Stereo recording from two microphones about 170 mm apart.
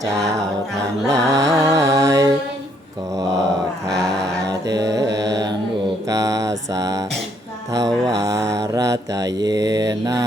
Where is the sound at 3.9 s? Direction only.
5° left (ahead or behind).